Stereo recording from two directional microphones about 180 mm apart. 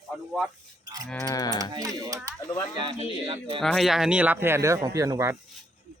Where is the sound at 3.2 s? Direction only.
30° right (ahead or behind).